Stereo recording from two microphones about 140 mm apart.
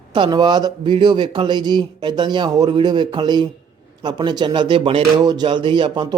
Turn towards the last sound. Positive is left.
turn(degrees=-35)  # may be behind; listen again after turning